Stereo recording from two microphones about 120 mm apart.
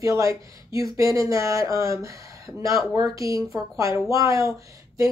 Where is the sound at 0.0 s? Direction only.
25° right (ahead or behind).